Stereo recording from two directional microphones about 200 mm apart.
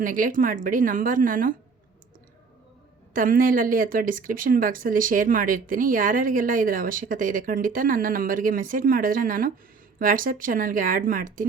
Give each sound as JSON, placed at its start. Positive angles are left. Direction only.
{"t": 0.0, "sound": "speech", "side_deg": -45}
{"t": 3.1, "sound": "speech", "side_deg": -45}